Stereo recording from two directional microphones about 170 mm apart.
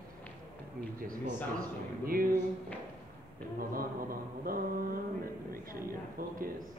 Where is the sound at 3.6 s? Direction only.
60° right (ahead or behind).